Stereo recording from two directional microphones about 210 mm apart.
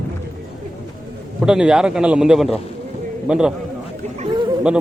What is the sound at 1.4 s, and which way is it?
A man's voice, 5° right (ahead or behind).